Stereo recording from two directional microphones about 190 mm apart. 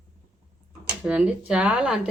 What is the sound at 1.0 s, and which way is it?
Speech, 5° right (ahead or behind).